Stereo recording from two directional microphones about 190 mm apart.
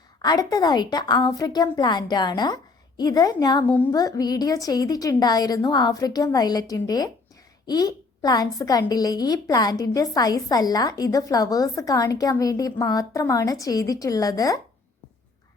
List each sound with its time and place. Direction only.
0.2 s a woman's voice: 20° left (ahead or behind)